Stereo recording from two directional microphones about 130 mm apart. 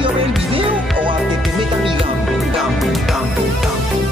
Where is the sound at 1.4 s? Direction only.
Centre (ahead or behind).